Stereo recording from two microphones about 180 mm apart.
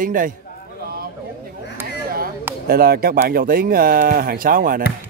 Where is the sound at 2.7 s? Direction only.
60° right (ahead or behind).